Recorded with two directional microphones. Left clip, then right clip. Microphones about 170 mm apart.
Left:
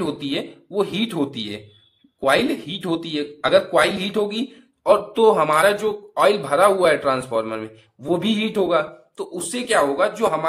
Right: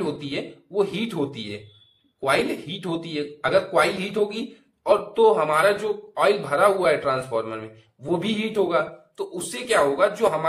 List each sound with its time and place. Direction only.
0.0 s speech: 35° left (ahead or behind)